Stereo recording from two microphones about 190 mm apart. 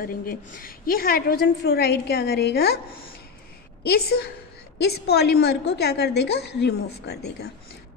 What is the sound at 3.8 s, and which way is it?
A woman's voice, 55° left (ahead or behind).